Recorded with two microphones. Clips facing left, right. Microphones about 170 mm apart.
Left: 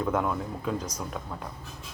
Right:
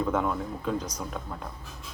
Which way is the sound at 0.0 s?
Centre (ahead or behind).